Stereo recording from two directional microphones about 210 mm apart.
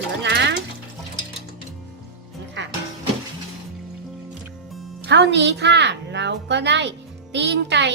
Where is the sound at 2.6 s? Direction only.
55° right (ahead or behind).